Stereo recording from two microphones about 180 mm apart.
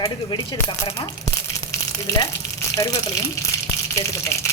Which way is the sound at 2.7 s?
20° left (ahead or behind).